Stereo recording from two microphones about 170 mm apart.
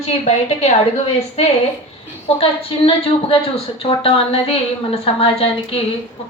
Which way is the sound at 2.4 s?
35° left (ahead or behind).